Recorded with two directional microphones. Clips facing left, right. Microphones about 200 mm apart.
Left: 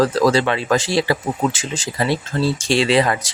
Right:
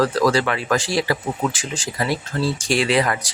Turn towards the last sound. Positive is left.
turn(degrees=25)  # may be behind; listen again after turning